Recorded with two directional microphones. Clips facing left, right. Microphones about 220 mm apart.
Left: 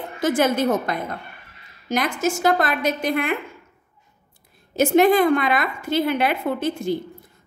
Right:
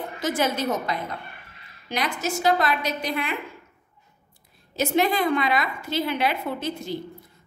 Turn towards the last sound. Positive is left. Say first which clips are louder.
# left 6 dB
turn(degrees=50)  # may be behind; listen again after turning